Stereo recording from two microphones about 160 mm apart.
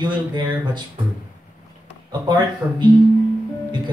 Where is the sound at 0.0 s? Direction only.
30° right (ahead or behind).